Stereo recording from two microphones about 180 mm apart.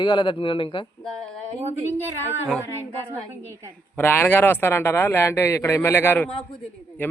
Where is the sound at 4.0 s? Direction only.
10° left (ahead or behind).